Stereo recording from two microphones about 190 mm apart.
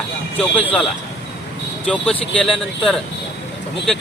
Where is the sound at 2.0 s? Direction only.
30° left (ahead or behind).